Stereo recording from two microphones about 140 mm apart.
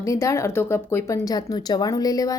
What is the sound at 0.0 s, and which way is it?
Speech, 20° left (ahead or behind).